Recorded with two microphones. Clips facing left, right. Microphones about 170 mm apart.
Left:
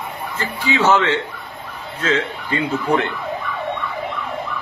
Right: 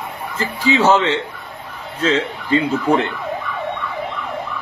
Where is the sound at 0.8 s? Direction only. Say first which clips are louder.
Left 1 dB; 20° right (ahead or behind).